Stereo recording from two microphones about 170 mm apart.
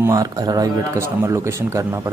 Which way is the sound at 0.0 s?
20° right (ahead or behind).